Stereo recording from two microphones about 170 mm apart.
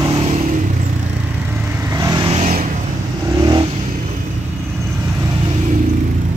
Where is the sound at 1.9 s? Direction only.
20° right (ahead or behind).